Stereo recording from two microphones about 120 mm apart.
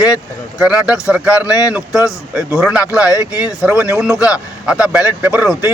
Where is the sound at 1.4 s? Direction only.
30° left (ahead or behind).